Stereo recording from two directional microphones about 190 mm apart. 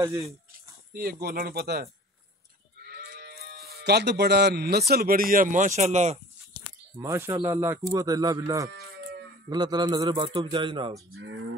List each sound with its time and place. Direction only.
0.0 s speech: 15° right (ahead or behind)
0.5 s speech: 50° right (ahead or behind)
3.2 s speech: 55° right (ahead or behind); by 6.1 s 35° right (ahead or behind)
7.0 s a man's voice: 15° right (ahead or behind)